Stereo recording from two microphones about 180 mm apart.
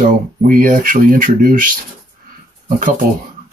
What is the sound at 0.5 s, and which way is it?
Speech, 50° right (ahead or behind).